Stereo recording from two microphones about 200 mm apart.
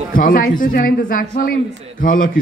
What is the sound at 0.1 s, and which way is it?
A man's voice, 45° left (ahead or behind).